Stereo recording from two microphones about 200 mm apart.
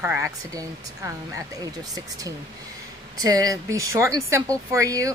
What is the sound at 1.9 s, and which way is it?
Speech, 20° right (ahead or behind).